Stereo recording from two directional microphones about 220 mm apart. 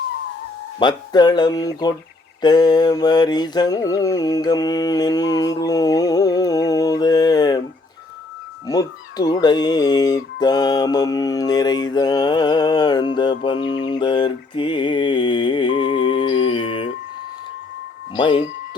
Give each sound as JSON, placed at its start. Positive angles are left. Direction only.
{"t": 0.8, "sound": "mantra", "side_deg": 20}
{"t": 8.6, "sound": "mantra", "side_deg": 15}
{"t": 18.1, "sound": "speech", "side_deg": 20}